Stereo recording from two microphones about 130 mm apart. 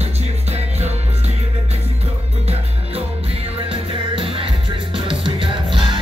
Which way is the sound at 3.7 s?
45° right (ahead or behind).